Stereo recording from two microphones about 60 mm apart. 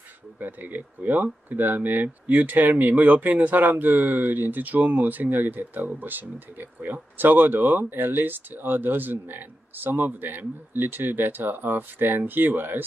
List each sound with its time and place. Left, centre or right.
0.4 s speech: right